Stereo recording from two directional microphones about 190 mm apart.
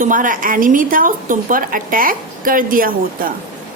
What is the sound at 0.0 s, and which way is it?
A woman's voice, 45° right (ahead or behind).